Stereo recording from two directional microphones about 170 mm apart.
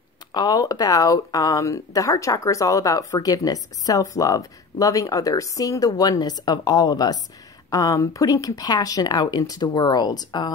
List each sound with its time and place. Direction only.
0.3 s speech: 25° left (ahead or behind)